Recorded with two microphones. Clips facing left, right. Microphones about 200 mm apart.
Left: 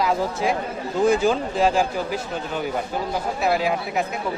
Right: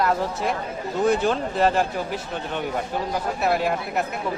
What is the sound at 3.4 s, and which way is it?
Speech, centre (ahead or behind).